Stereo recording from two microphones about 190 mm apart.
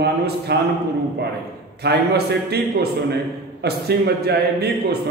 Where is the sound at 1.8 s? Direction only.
60° right (ahead or behind).